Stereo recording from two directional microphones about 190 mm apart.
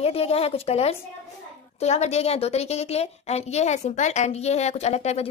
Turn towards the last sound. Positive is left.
turn(degrees=35)  # may be behind; listen again after turning